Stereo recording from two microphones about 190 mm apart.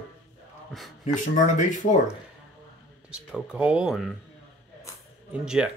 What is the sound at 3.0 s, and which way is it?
Speech, 5° right (ahead or behind).